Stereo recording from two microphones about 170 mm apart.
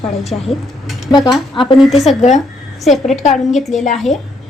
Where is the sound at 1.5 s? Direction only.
30° left (ahead or behind).